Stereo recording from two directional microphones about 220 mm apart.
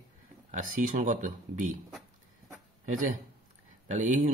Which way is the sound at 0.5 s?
35° right (ahead or behind).